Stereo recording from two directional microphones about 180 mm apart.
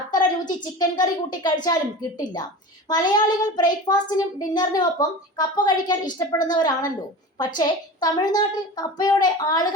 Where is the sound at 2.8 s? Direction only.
25° left (ahead or behind).